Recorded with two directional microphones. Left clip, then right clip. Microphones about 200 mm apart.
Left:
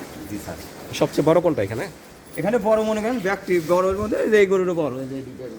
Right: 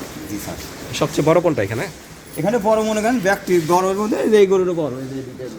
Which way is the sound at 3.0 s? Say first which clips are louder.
Right 6 dB; 35° right (ahead or behind).